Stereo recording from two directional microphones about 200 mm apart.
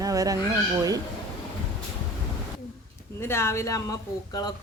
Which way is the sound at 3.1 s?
10° left (ahead or behind).